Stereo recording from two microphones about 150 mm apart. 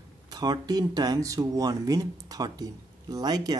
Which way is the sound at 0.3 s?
25° right (ahead or behind).